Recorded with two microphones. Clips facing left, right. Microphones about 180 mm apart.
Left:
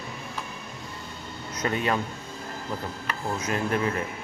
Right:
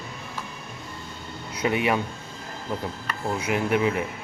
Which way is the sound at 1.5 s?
15° right (ahead or behind).